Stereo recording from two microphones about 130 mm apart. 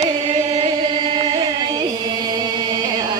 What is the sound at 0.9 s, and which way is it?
Chant, 35° right (ahead or behind).